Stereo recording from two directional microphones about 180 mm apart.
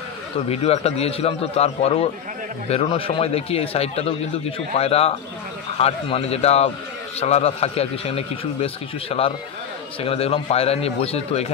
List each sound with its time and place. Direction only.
0.5 s a man's voice: 35° left (ahead or behind)